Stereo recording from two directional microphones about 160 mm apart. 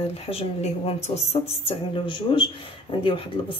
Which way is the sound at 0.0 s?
40° left (ahead or behind).